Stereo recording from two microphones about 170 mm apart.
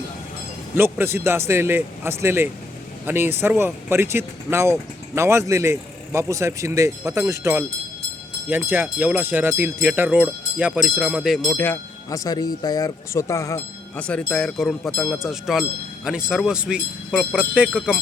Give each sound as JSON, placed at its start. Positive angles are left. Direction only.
{"t": 0.8, "sound": "speech", "side_deg": -15}
{"t": 11.5, "sound": "speech", "side_deg": 10}
{"t": 14.1, "sound": "speech", "side_deg": 5}